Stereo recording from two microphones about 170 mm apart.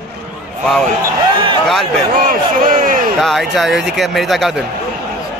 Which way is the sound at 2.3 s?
55° right (ahead or behind).